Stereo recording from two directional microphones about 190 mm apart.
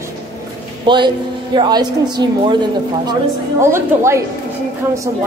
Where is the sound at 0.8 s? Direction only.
25° right (ahead or behind).